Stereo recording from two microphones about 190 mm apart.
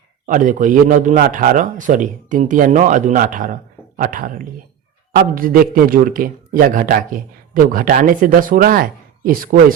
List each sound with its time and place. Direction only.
0.3 s a man's voice: 45° right (ahead or behind)